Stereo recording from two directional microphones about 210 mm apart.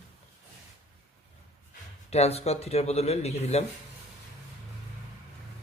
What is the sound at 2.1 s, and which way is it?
Speech, 30° left (ahead or behind).